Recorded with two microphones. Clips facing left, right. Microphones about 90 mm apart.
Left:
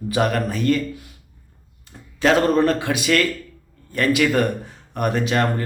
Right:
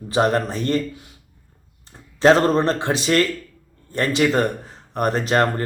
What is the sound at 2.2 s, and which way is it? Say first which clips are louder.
Speech: right 2 dB; 35° right (ahead or behind).